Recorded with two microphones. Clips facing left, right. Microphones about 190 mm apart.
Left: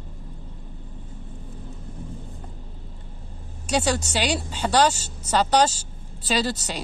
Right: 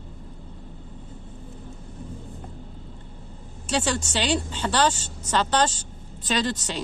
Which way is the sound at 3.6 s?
10° left (ahead or behind).